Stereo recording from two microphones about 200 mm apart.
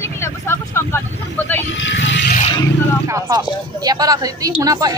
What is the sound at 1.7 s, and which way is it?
Vehicle, 65° left (ahead or behind).